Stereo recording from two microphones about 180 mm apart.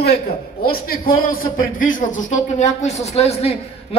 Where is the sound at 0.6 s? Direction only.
55° left (ahead or behind).